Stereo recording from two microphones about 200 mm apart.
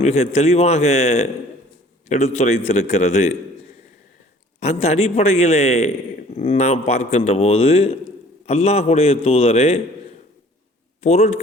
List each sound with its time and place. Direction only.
0.0 s a man's voice: 30° left (ahead or behind)
4.6 s a man's voice: 35° left (ahead or behind)
11.0 s a man's voice: 35° left (ahead or behind)